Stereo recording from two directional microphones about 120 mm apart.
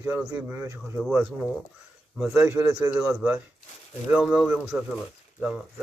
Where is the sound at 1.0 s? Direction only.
10° right (ahead or behind).